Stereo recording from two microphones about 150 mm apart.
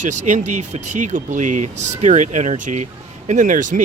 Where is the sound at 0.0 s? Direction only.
55° right (ahead or behind).